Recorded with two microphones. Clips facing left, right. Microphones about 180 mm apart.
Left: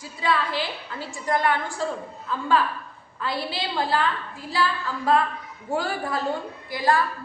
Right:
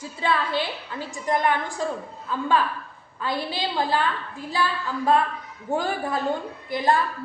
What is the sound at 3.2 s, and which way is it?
Speech, 20° right (ahead or behind).